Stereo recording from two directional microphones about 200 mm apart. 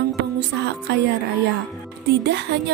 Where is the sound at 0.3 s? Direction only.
55° right (ahead or behind).